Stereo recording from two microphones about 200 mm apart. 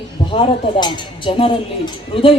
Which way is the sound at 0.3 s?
25° left (ahead or behind).